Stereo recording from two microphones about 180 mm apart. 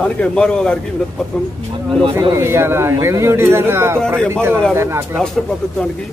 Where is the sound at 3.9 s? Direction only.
5° left (ahead or behind).